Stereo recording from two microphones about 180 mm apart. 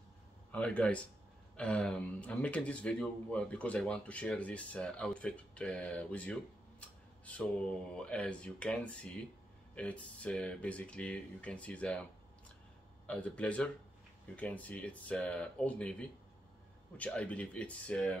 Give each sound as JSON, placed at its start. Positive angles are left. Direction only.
{"t": 0.5, "sound": "speech", "side_deg": 5}
{"t": 6.8, "sound": "a sound", "side_deg": 5}
{"t": 7.9, "sound": "speech", "side_deg": 5}